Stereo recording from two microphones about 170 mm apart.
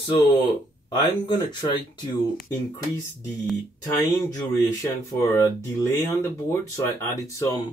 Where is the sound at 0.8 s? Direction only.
25° left (ahead or behind).